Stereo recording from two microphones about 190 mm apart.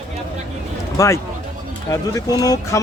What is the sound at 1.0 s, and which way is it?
Speech, 15° left (ahead or behind).